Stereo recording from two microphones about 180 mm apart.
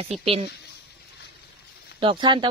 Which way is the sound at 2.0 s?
25° right (ahead or behind).